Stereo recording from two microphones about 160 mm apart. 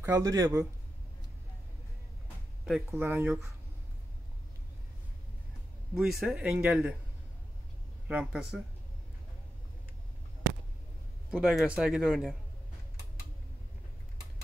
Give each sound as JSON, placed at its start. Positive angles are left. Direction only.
{"t": 0.0, "sound": "speech", "side_deg": -20}
{"t": 3.0, "sound": "speech", "side_deg": -10}
{"t": 5.9, "sound": "a man's voice", "side_deg": 0}
{"t": 8.1, "sound": "a man's voice", "side_deg": -5}
{"t": 11.3, "sound": "a man's voice", "side_deg": -5}